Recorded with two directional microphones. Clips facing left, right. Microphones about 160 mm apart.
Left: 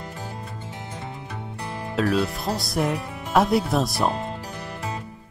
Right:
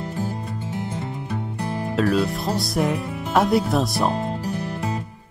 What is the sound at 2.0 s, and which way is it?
Speech, centre (ahead or behind).